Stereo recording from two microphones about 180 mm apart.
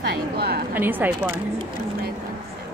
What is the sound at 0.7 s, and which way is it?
Speech, 10° right (ahead or behind).